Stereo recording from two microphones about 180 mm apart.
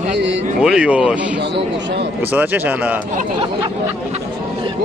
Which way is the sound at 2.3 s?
10° right (ahead or behind).